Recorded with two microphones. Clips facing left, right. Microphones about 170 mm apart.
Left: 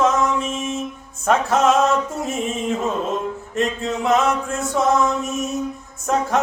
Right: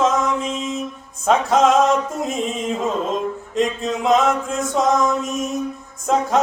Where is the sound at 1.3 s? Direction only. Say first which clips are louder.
Right 2 dB; 20° right (ahead or behind).